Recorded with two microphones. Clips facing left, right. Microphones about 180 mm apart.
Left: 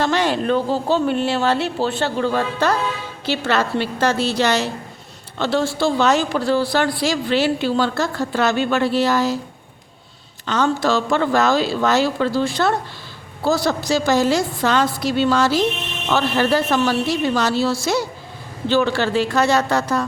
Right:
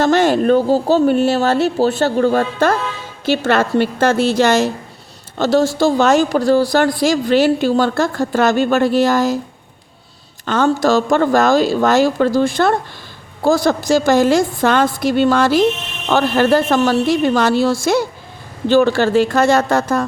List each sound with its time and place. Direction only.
0.0 s a woman's voice: 45° right (ahead or behind)
10.4 s a woman's voice: 50° right (ahead or behind)